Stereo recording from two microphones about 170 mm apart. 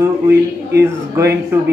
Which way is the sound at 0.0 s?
15° right (ahead or behind).